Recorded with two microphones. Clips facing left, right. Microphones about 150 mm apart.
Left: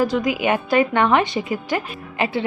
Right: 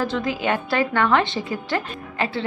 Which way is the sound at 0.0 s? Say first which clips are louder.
Left 4 dB; 15° left (ahead or behind).